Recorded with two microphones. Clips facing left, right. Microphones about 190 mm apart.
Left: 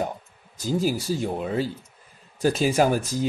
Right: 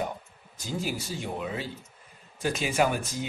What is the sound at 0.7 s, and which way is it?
Speech, 40° left (ahead or behind).